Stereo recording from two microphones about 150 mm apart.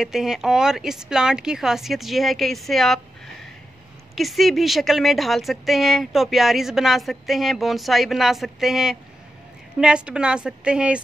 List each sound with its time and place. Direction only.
0.0 s speech: 5° right (ahead or behind)
4.1 s a woman's voice: centre (ahead or behind)